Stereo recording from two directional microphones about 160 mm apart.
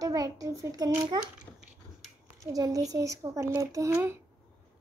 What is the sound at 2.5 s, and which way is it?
Speech, 25° right (ahead or behind).